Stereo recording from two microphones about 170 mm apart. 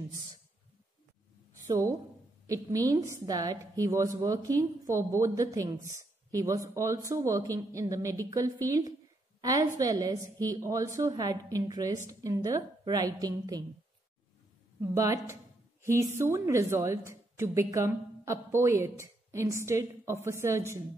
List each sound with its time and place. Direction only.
1.5 s a sound: 15° right (ahead or behind)
2.4 s a woman's voice: 20° right (ahead or behind)
14.8 s a woman's voice: 15° right (ahead or behind)